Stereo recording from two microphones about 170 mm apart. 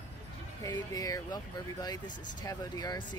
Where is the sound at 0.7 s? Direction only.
20° left (ahead or behind).